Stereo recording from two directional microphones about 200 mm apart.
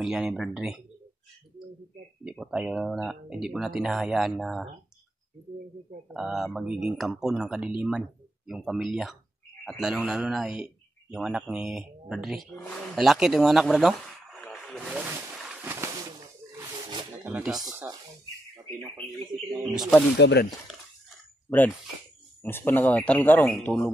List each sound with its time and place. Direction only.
0.0 s a man's voice: 5° right (ahead or behind)
2.2 s a man's voice: 5° right (ahead or behind)
6.1 s a man's voice: centre (ahead or behind)
14.4 s a sound: 5° left (ahead or behind); by 16.1 s 15° right (ahead or behind)
17.2 s a man's voice: 5° right (ahead or behind)
18.8 s speech: 25° right (ahead or behind)
20.2 s speech: 60° left (ahead or behind)
21.5 s speech: 10° left (ahead or behind)